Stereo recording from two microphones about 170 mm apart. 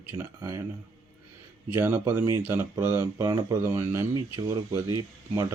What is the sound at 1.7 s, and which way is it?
Speech, 15° right (ahead or behind).